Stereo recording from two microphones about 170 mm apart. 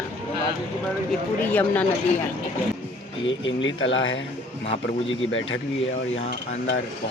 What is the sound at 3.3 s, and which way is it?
Speech, 90° left.